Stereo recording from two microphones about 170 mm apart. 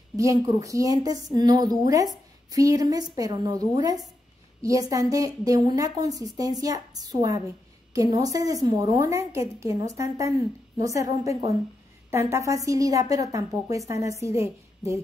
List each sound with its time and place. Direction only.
0.1 s speech: 20° right (ahead or behind)